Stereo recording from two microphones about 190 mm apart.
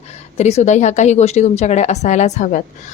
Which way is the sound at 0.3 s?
35° left (ahead or behind).